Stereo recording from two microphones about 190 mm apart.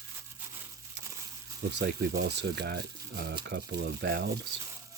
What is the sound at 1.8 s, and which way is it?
Speech, 55° right (ahead or behind).